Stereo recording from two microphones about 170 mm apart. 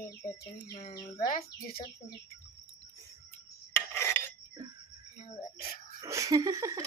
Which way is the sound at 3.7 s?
15° left (ahead or behind).